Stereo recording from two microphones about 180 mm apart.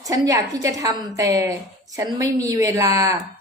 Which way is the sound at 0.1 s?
20° right (ahead or behind).